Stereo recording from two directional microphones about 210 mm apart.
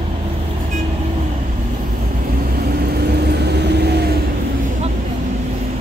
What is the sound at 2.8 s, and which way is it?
Vehicle, 50° right (ahead or behind).